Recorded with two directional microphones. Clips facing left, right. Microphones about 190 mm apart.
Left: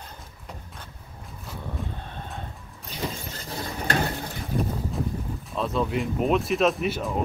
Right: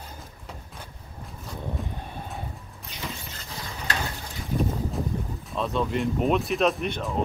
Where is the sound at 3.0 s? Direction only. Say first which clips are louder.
Left 4 dB; 35° left (ahead or behind).